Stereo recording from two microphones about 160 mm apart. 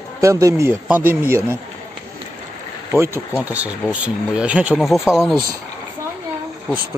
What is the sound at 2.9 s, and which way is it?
Speech, 15° right (ahead or behind).